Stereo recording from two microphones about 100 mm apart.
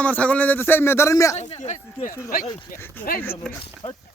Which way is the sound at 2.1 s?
35° left (ahead or behind).